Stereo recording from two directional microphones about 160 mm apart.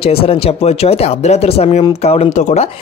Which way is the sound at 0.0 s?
35° left (ahead or behind).